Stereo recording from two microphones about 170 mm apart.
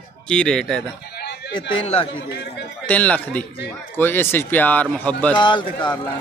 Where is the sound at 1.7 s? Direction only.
35° left (ahead or behind).